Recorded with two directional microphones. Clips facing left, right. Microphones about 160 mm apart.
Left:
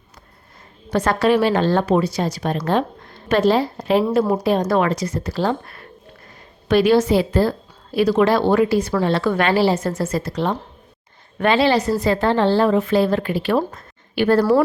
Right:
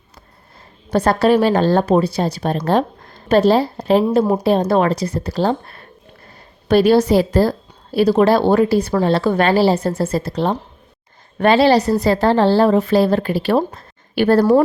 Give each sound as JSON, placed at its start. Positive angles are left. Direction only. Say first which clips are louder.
{"t": 0.9, "sound": "a woman's voice", "louder": "right 3 dB", "side_deg": -35}